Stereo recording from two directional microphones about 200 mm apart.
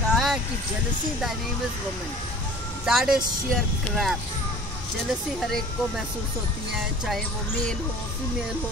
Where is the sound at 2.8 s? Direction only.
5° right (ahead or behind).